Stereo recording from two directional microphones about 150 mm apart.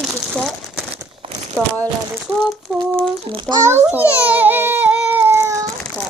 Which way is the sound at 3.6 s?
15° right (ahead or behind).